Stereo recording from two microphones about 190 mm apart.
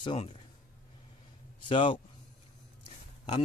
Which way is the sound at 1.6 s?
25° left (ahead or behind).